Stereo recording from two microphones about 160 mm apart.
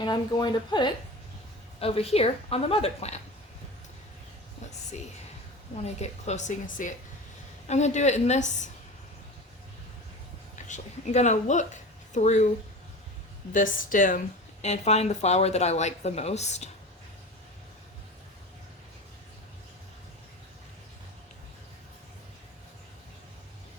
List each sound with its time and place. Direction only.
0.0 s a woman's voice: 25° left (ahead or behind)
6.0 s speech: 45° left (ahead or behind)
10.5 s speech: 50° left (ahead or behind)
13.5 s speech: 55° left (ahead or behind)
14.6 s speech: 45° left (ahead or behind)